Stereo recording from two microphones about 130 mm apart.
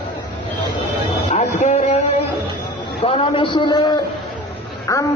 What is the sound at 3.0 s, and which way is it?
A man's voice, 45° left (ahead or behind).